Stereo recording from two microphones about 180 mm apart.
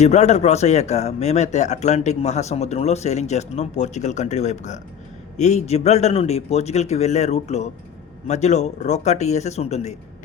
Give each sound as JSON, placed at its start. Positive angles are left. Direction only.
{"t": 0.0, "sound": "speech", "side_deg": 40}